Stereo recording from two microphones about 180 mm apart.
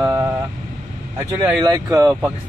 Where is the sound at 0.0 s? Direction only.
15° right (ahead or behind).